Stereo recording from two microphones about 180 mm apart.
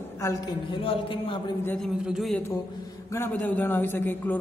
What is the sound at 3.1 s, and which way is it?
A man's voice, 10° left (ahead or behind).